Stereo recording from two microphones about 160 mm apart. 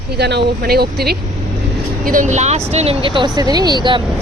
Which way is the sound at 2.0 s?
55° right (ahead or behind).